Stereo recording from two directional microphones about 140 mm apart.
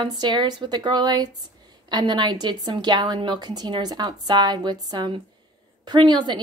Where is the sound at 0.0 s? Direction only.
30° right (ahead or behind).